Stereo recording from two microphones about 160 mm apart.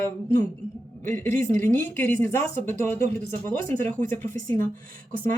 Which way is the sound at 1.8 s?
15° left (ahead or behind).